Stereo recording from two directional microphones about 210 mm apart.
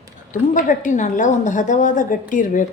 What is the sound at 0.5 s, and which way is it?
Speech, 40° left (ahead or behind).